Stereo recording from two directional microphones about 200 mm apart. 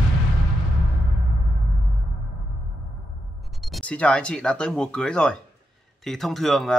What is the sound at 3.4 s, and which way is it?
Speech, centre (ahead or behind).